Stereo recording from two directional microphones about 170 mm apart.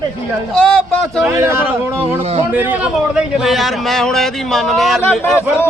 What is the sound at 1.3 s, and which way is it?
A man's voice, 15° right (ahead or behind).